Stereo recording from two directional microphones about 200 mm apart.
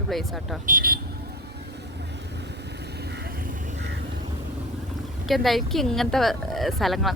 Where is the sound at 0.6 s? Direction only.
45° right (ahead or behind).